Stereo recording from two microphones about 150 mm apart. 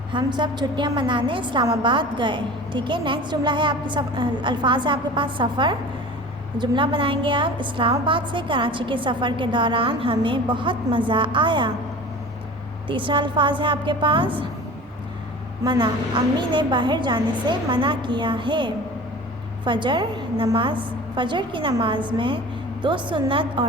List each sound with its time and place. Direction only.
0.1 s a woman's voice: 30° right (ahead or behind)
12.9 s a woman's voice: 35° right (ahead or behind)
15.6 s a woman's voice: 30° right (ahead or behind)